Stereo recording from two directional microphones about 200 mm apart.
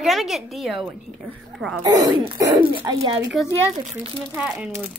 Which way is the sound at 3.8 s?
30° right (ahead or behind).